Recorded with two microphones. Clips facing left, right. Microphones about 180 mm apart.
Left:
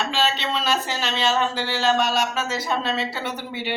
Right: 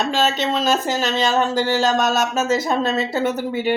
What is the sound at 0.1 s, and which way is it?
Speech, 45° right (ahead or behind).